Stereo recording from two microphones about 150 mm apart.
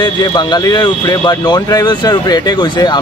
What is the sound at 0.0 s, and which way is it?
Speech, 30° left (ahead or behind).